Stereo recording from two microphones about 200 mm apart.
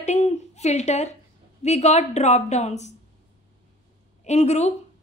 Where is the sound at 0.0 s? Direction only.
35° left (ahead or behind).